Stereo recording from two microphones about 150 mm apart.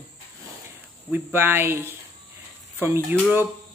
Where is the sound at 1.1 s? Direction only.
15° right (ahead or behind).